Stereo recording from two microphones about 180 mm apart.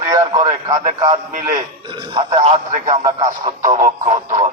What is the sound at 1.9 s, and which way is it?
A man's voice, 25° right (ahead or behind).